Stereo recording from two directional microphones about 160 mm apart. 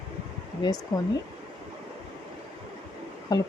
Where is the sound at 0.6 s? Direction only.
25° left (ahead or behind).